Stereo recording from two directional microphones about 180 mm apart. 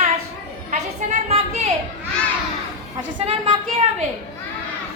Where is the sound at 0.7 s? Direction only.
45° right (ahead or behind).